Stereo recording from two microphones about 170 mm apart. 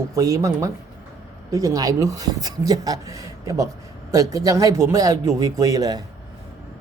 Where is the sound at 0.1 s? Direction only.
20° right (ahead or behind).